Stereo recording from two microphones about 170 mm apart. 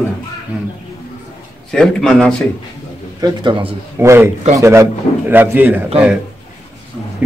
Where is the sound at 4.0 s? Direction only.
15° right (ahead or behind).